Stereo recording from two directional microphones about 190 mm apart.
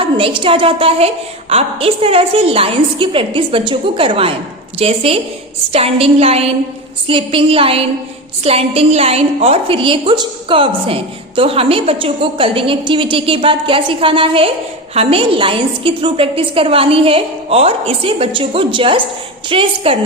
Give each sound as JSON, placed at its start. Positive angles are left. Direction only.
{"t": 0.0, "sound": "a woman's voice", "side_deg": -30}